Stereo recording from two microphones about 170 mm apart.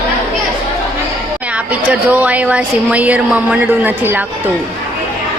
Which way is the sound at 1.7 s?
10° right (ahead or behind).